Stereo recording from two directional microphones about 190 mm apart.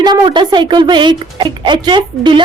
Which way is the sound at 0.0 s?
20° right (ahead or behind).